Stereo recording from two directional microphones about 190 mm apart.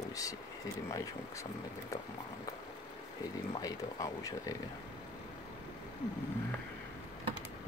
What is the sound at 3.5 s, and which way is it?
Speech, 20° left (ahead or behind).